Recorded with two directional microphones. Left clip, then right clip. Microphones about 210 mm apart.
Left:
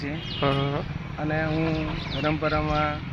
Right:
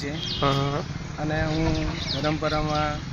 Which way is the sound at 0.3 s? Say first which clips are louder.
Right 1 dB; centre (ahead or behind).